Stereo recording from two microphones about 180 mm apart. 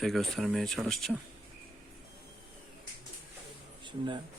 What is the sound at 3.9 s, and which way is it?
Speech, 25° right (ahead or behind).